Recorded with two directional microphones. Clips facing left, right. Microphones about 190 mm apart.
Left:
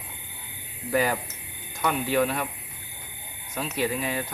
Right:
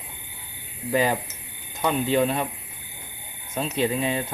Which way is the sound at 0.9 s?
25° right (ahead or behind).